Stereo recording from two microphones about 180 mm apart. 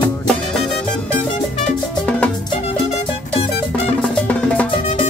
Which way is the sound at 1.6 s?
5° left (ahead or behind).